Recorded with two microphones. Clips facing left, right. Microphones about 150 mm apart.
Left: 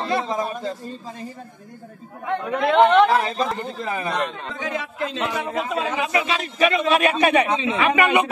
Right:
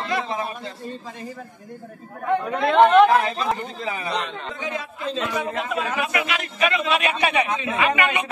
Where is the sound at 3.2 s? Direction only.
40° left (ahead or behind).